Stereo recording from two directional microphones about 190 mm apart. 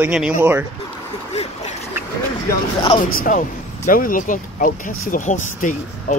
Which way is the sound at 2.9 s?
45° left (ahead or behind).